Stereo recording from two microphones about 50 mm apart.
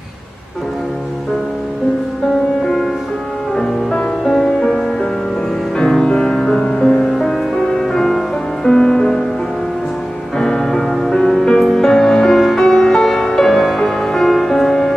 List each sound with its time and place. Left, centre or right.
2.6 s music: centre
3.5 s music: centre
10.4 s music: centre